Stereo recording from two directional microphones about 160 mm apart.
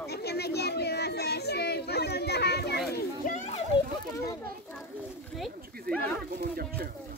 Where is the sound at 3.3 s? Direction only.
50° left (ahead or behind).